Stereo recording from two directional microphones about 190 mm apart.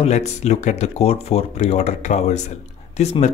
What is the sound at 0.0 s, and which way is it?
Speech, 35° left (ahead or behind).